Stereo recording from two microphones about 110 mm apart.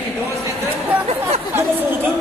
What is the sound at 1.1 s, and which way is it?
Speech, 70° right (ahead or behind).